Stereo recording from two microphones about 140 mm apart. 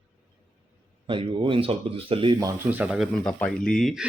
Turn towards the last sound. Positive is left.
turn(degrees=0)  # may be behind; listen again after turning